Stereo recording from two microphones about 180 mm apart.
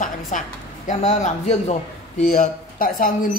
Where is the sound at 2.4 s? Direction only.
50° left (ahead or behind).